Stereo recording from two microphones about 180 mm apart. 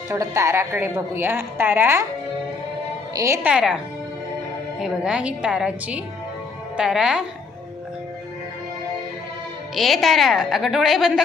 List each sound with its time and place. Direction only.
0.1 s a woman's voice: 15° right (ahead or behind)
3.2 s a woman's voice: 15° right (ahead or behind)
3.5 s a woman's voice: 5° right (ahead or behind)
4.8 s a woman's voice: 5° right (ahead or behind)
9.7 s a woman's voice: centre (ahead or behind)